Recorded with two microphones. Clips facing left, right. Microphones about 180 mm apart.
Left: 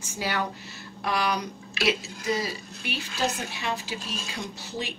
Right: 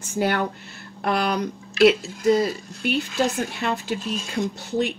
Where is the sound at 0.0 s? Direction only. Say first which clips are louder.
Right 7 dB; 55° right (ahead or behind).